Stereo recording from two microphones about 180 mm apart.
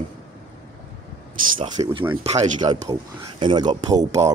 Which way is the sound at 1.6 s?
25° right (ahead or behind).